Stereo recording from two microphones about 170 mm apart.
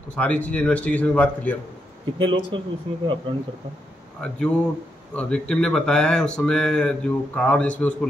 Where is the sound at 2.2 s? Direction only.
30° right (ahead or behind).